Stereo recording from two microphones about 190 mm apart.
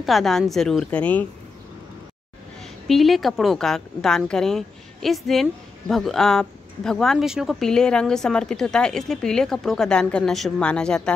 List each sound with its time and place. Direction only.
0.0 s a woman's voice: centre (ahead or behind)
2.6 s a woman's voice: centre (ahead or behind)